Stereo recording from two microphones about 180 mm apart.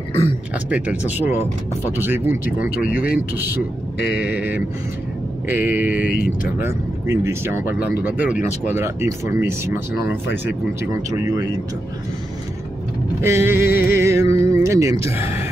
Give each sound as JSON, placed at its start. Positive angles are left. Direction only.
{"t": 0.7, "sound": "speech", "side_deg": -5}
{"t": 4.1, "sound": "speech", "side_deg": -10}
{"t": 6.1, "sound": "speech", "side_deg": 55}
{"t": 6.6, "sound": "speech", "side_deg": -15}
{"t": 13.2, "sound": "speech", "side_deg": -15}